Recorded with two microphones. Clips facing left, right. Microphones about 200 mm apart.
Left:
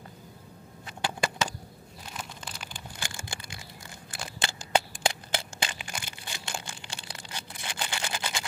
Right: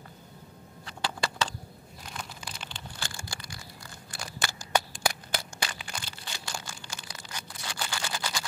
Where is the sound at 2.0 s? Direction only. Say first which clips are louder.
Even; centre (ahead or behind).